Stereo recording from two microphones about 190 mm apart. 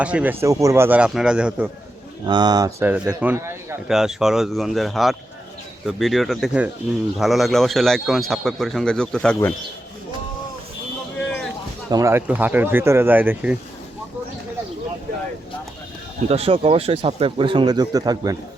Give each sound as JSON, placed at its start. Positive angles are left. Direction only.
{"t": 0.0, "sound": "speech", "side_deg": -5}
{"t": 2.2, "sound": "speech", "side_deg": -25}
{"t": 3.8, "sound": "a man's voice", "side_deg": 0}
{"t": 11.9, "sound": "speech", "side_deg": -15}
{"t": 16.3, "sound": "speech", "side_deg": -30}